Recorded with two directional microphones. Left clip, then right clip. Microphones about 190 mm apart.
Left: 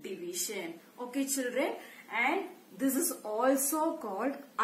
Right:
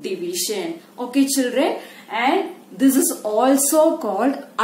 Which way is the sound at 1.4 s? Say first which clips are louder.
Right 13 dB; 20° right (ahead or behind).